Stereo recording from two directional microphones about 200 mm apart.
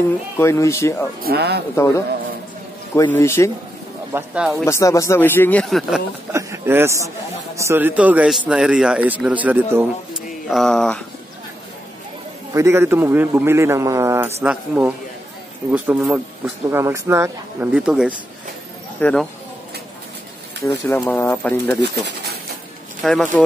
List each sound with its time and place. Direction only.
0.4 s speech: 15° left (ahead or behind)
1.2 s speech: 55° right (ahead or behind)
2.9 s speech: 10° left (ahead or behind)
4.1 s speech: 10° right (ahead or behind)
4.6 s speech: 15° left (ahead or behind); by 6.0 s centre (ahead or behind)
6.3 s a man's voice: 15° right (ahead or behind); by 11.0 s 5° left (ahead or behind)
12.5 s a man's voice: 15° right (ahead or behind)
18.9 s speech: 5° left (ahead or behind)
20.6 s speech: 15° left (ahead or behind)
23.0 s speech: 5° left (ahead or behind)